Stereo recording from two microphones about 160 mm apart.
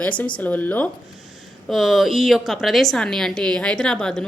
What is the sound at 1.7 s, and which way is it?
A woman's voice, centre (ahead or behind).